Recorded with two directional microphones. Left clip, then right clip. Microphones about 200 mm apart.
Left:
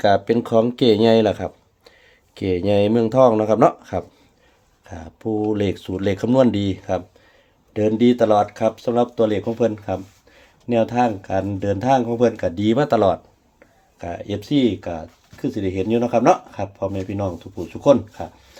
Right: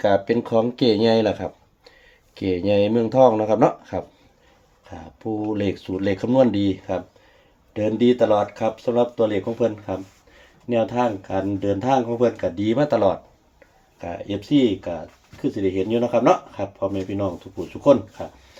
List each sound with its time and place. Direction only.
0.0 s speech: 45° left (ahead or behind)